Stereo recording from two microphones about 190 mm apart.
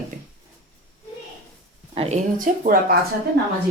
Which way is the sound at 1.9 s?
35° right (ahead or behind).